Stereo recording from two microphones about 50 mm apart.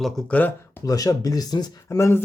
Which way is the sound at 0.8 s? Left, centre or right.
Left.